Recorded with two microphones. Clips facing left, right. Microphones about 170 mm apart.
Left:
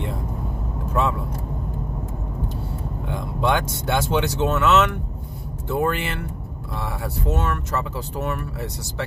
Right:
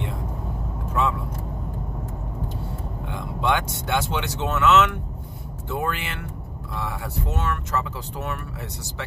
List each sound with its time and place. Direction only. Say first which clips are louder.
3.1 s speech: left 2 dB; 40° left (ahead or behind)